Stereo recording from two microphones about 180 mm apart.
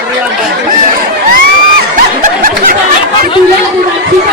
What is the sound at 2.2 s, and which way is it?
Snicker, 50° right (ahead or behind).